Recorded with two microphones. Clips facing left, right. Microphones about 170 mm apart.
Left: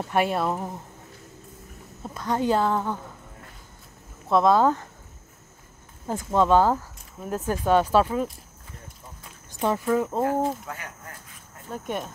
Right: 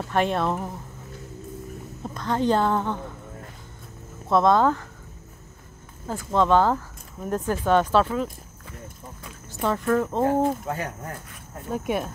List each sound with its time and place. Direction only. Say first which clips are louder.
0.1 s speech: right 1 dB; 5° left (ahead or behind)
2.0 s speech: right 1 dB; 10° left (ahead or behind)
4.3 s speech: even; 5° left (ahead or behind)
6.0 s speech: even; 15° left (ahead or behind)
9.5 s speech: even; 15° left (ahead or behind)
10.2 s speech: right 3 dB; 30° right (ahead or behind)
11.7 s speech: right 5 dB; 10° right (ahead or behind)